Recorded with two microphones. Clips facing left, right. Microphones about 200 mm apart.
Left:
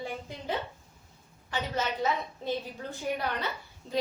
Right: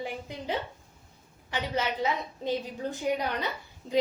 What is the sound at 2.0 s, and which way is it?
A woman's voice, 15° right (ahead or behind).